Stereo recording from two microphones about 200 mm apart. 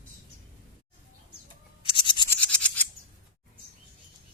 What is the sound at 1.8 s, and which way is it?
Toothbrush, 25° left (ahead or behind).